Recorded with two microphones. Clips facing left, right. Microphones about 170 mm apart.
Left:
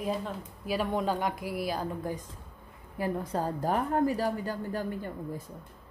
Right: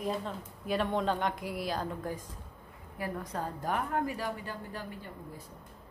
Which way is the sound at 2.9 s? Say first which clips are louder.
Left 6 dB; 30° left (ahead or behind).